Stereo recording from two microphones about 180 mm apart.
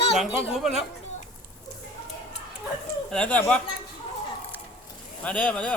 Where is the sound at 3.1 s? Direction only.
5° left (ahead or behind).